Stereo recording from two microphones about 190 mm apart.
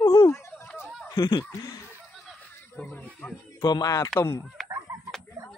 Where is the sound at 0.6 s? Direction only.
10° left (ahead or behind).